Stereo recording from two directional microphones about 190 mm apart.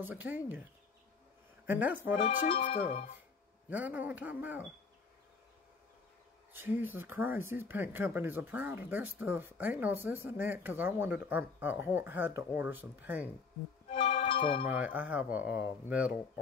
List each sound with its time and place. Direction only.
0.0 s speech: 10° right (ahead or behind)
1.7 s speech: 10° right (ahead or behind)
2.2 s speech: 45° left (ahead or behind)
2.7 s speech: 30° left (ahead or behind)
3.7 s speech: 10° right (ahead or behind)
6.5 s speech: 10° right (ahead or behind)
14.0 s music: 40° left (ahead or behind)
14.3 s music: 25° left (ahead or behind)
14.7 s speech: 10° right (ahead or behind)
15.4 s speech: 55° left (ahead or behind)
15.9 s speech: 10° right (ahead or behind)